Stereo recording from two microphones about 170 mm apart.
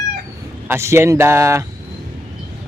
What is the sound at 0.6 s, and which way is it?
Speech, 15° right (ahead or behind).